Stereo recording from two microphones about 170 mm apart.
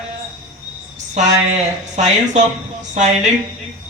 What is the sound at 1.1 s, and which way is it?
Speech, 45° right (ahead or behind).